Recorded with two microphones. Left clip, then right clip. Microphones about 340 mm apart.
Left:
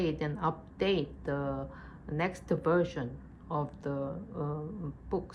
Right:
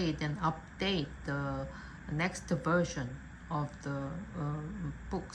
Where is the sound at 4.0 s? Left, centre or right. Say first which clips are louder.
Left 4 dB; left.